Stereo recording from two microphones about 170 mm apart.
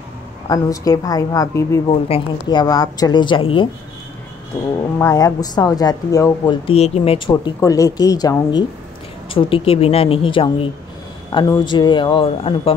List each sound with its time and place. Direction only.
0.5 s speech: 20° left (ahead or behind)
1.9 s speech: 35° left (ahead or behind)
4.7 s speech: 20° left (ahead or behind)
6.7 s speech: 35° left (ahead or behind)